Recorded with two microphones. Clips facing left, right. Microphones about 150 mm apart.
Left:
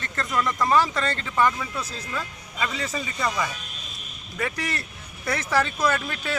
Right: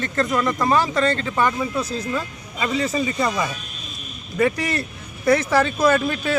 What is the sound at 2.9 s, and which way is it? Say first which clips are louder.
Speech: right 6 dB; 20° right (ahead or behind).